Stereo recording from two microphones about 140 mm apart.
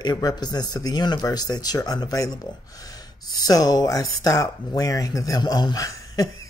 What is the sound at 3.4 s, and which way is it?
Speech, 25° left (ahead or behind).